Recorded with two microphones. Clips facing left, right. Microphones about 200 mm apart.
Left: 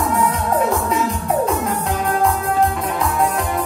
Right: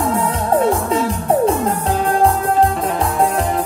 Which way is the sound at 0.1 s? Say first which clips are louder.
Right 2 dB; 30° right (ahead or behind).